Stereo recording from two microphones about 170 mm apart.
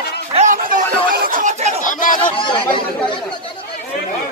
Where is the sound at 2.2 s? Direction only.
25° left (ahead or behind).